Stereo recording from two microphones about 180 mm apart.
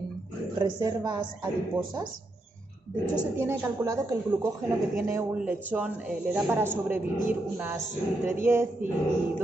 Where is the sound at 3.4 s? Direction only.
15° right (ahead or behind).